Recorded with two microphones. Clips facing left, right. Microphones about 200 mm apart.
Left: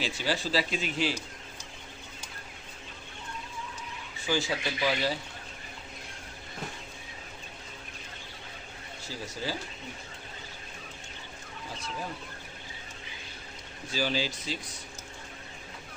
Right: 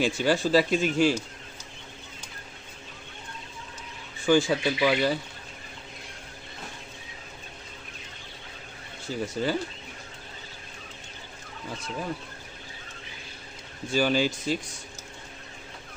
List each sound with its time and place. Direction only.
0.0 s speech: 50° right (ahead or behind)
4.3 s speech: 50° right (ahead or behind)
9.0 s speech: 55° right (ahead or behind)
13.9 s speech: 50° right (ahead or behind)